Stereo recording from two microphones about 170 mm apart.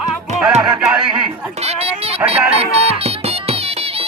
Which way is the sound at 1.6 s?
35° right (ahead or behind).